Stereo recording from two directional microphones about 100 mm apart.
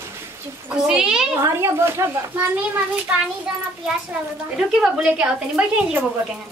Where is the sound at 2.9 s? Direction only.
10° right (ahead or behind).